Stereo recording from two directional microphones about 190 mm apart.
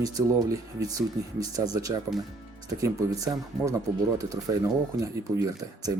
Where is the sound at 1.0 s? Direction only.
20° right (ahead or behind).